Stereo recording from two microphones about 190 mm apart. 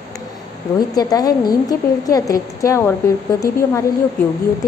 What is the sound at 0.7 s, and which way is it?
A woman's voice, 20° left (ahead or behind).